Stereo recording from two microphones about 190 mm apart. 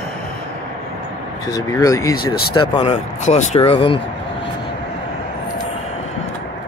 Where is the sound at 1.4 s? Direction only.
20° left (ahead or behind).